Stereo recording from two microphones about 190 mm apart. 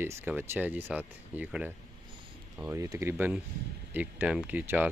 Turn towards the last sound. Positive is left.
turn(degrees=-10)  # may be behind; listen again after turning